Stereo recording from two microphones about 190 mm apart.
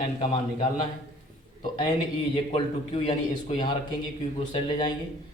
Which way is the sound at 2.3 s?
30° left (ahead or behind).